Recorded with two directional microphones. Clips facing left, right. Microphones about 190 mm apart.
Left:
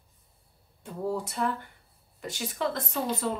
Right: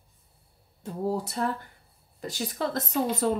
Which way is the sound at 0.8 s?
40° right (ahead or behind).